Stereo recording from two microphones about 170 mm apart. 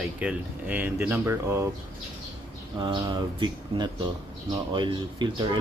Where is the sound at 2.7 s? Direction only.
25° right (ahead or behind).